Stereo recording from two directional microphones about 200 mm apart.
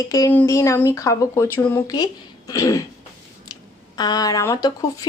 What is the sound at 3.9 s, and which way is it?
Speech, 20° left (ahead or behind).